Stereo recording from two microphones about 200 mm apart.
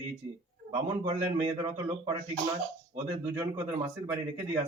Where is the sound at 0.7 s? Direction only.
25° right (ahead or behind).